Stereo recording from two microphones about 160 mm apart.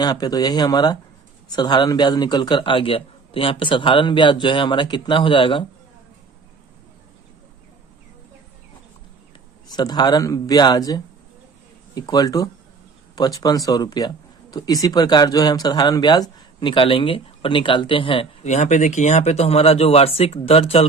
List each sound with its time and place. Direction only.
0.0 s speech: 25° left (ahead or behind)
9.6 s speech: 25° left (ahead or behind)